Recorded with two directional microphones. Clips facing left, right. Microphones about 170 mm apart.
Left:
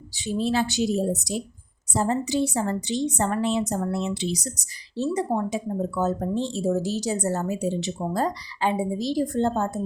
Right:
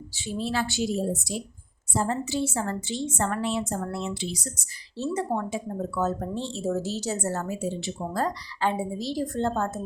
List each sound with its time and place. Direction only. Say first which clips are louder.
0.2 s a woman's voice: left 5 dB; 20° left (ahead or behind)